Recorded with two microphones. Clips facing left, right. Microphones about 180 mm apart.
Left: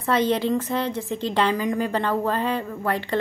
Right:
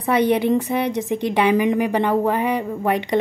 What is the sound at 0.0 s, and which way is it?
A woman's voice, 15° right (ahead or behind).